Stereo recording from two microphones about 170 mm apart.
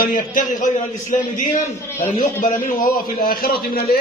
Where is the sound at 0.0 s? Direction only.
55° left (ahead or behind).